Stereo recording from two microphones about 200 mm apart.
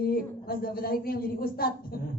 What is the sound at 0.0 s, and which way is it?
A woman's voice, 50° left (ahead or behind).